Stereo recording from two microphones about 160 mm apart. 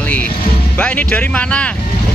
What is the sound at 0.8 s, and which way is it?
Speech, 5° left (ahead or behind).